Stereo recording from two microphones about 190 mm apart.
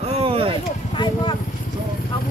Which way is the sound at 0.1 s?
30° right (ahead or behind).